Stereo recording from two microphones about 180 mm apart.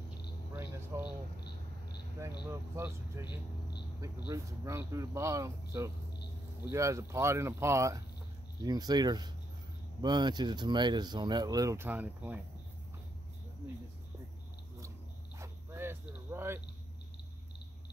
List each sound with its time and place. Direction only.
0.6 s a sound: 15° right (ahead or behind)
2.4 s speech: 15° right (ahead or behind)
4.3 s speech: 15° right (ahead or behind)
15.3 s dog: 15° right (ahead or behind)